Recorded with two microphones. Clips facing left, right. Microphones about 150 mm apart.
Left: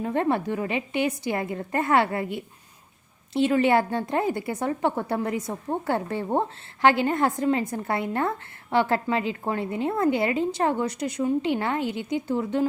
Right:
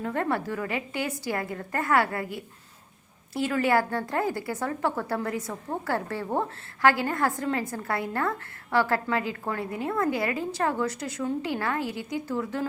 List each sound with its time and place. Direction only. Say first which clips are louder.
0.0 s a woman's voice: left 4 dB; 20° left (ahead or behind)